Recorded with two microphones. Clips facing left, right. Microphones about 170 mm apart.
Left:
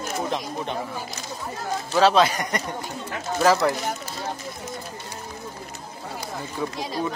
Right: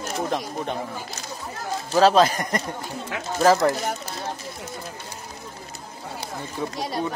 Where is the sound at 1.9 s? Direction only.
40° right (ahead or behind).